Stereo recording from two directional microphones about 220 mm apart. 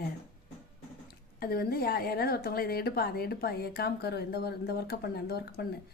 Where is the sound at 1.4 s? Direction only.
45° left (ahead or behind).